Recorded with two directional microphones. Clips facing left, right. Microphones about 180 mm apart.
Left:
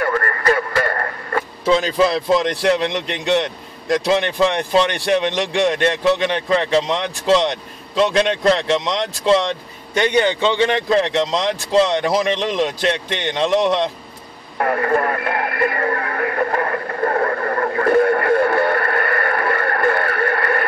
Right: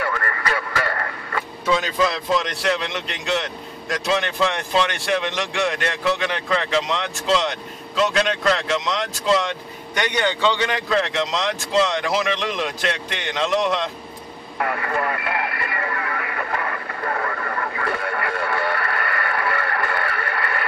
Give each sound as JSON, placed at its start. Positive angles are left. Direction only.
{"t": 0.0, "sound": "radio", "side_deg": 45}
{"t": 1.7, "sound": "a man's voice", "side_deg": 30}
{"t": 14.6, "sound": "radio", "side_deg": 40}